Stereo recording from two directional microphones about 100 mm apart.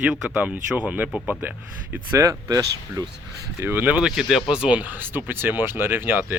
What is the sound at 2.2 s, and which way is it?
Speech, 35° right (ahead or behind).